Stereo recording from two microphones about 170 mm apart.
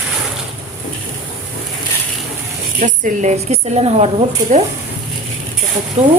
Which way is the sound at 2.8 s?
50° right (ahead or behind).